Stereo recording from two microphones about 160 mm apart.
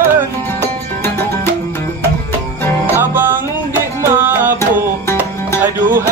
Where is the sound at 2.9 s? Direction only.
15° right (ahead or behind).